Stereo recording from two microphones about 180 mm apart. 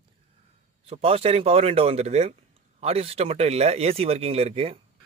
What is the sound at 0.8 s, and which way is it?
Speech, 35° right (ahead or behind).